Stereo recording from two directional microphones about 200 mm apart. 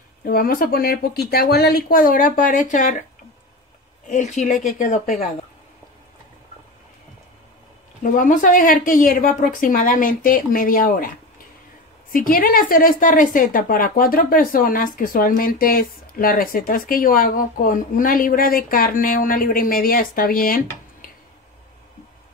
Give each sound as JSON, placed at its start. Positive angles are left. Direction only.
{"t": 0.2, "sound": "a woman's voice", "side_deg": 45}
{"t": 4.1, "sound": "speech", "side_deg": 35}
{"t": 8.0, "sound": "a woman's voice", "side_deg": 40}
{"t": 12.1, "sound": "a woman's voice", "side_deg": 45}